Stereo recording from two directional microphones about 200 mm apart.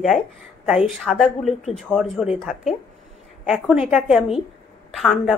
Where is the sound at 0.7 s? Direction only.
Centre (ahead or behind).